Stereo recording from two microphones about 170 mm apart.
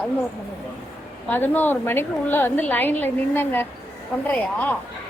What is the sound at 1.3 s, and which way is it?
A woman's voice, 10° left (ahead or behind).